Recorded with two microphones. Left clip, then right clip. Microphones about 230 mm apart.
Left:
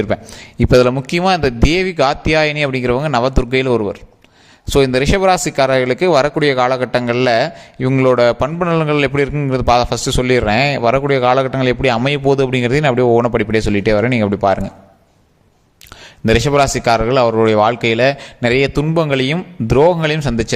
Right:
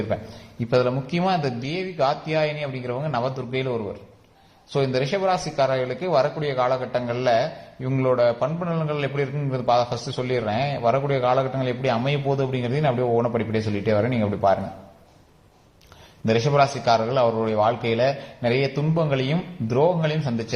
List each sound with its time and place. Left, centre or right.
0.6 s speech: left
16.2 s speech: left